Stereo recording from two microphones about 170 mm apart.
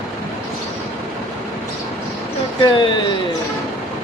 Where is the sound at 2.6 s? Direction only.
25° left (ahead or behind).